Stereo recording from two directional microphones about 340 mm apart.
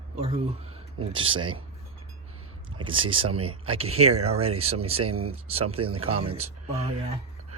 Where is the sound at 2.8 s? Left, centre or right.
Centre.